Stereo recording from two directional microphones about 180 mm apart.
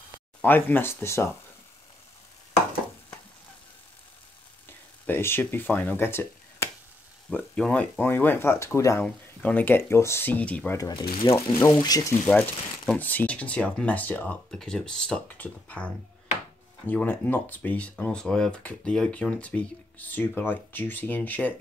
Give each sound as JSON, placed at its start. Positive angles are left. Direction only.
{"t": 0.4, "sound": "speech", "side_deg": 10}
{"t": 4.6, "sound": "speech", "side_deg": 10}
{"t": 10.8, "sound": "speech", "side_deg": 25}
{"t": 12.3, "sound": "speech", "side_deg": 5}